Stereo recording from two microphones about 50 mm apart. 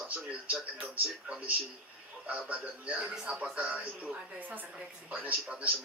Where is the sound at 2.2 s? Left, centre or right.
Right.